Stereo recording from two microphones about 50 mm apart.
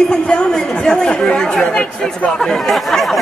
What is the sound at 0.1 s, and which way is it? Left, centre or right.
Speech, centre.